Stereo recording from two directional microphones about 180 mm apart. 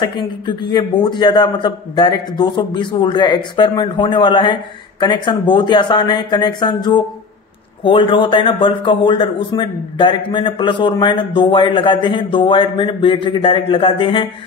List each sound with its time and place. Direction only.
0.0 s a man's voice: 25° left (ahead or behind)